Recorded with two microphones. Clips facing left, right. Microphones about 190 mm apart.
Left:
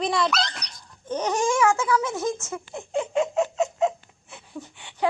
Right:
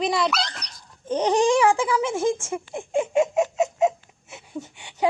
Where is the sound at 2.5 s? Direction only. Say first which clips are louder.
Right 3 dB; 10° right (ahead or behind).